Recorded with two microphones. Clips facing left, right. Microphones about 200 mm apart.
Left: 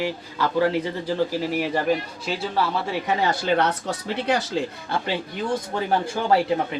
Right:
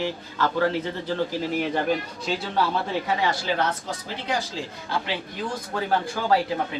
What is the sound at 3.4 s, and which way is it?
Speech, 65° left (ahead or behind).